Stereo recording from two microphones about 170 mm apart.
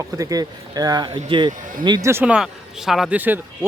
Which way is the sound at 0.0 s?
20° right (ahead or behind).